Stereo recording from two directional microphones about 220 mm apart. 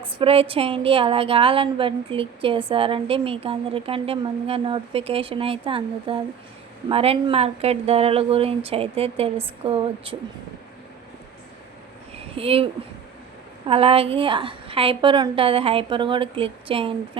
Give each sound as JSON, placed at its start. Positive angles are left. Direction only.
{"t": 0.2, "sound": "a woman's voice", "side_deg": -25}
{"t": 12.3, "sound": "a woman's voice", "side_deg": -25}
{"t": 13.7, "sound": "a woman's voice", "side_deg": -25}